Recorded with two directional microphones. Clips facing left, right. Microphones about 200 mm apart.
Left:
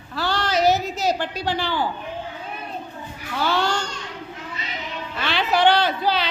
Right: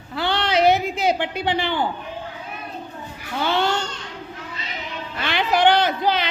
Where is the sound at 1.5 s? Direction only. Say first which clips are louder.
Right 1 dB; 20° right (ahead or behind).